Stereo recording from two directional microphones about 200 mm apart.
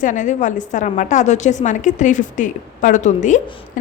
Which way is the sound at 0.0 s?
40° left (ahead or behind).